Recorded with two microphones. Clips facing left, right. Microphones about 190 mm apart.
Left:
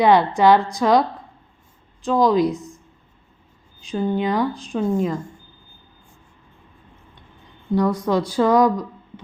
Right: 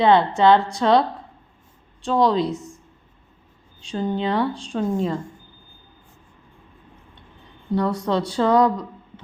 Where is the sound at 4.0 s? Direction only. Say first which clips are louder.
Left 2 dB; 10° left (ahead or behind).